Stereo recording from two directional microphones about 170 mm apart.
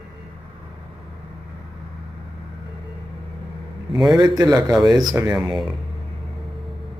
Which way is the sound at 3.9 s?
Centre (ahead or behind).